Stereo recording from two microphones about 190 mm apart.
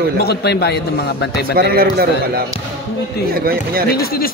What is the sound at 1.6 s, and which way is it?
A man's voice, 55° right (ahead or behind).